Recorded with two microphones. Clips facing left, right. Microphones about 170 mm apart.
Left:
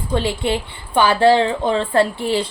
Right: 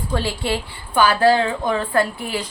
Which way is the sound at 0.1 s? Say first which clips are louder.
Left 4 dB; 20° left (ahead or behind).